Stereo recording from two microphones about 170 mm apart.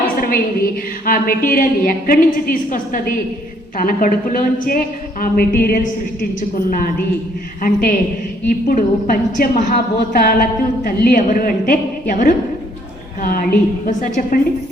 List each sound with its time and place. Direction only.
0.2 s a woman's voice: 60° left (ahead or behind)